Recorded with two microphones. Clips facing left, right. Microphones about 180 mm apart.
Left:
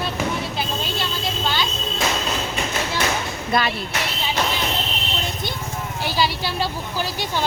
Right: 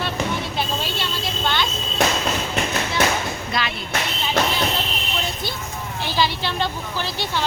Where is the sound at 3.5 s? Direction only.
50° left (ahead or behind).